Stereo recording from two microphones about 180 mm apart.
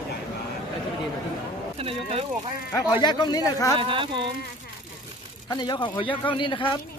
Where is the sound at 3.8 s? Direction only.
30° right (ahead or behind).